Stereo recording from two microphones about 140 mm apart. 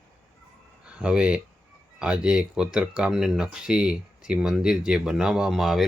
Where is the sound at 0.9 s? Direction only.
5° right (ahead or behind).